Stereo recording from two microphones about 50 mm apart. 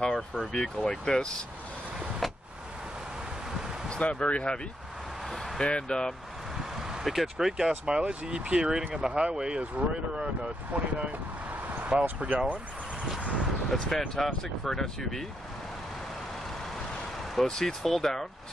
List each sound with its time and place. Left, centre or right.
0.0 s speech: centre
3.9 s speech: left
5.6 s speech: centre
7.1 s speech: centre; by 11.1 s right
11.9 s speech: centre
13.2 s vehicle: right
13.7 s speech: centre
17.5 s speech: centre